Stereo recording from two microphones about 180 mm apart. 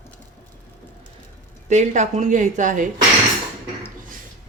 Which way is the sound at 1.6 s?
40° right (ahead or behind).